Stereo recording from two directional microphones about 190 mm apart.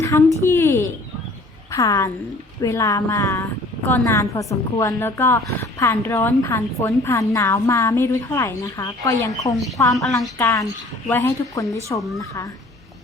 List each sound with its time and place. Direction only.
0.0 s a woman's voice: 15° left (ahead or behind)
9.9 s a woman's voice: centre (ahead or behind)
10.3 s a woman's voice: 15° left (ahead or behind)